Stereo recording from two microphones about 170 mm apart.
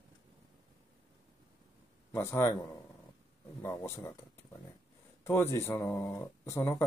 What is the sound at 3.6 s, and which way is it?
Speech, 10° left (ahead or behind).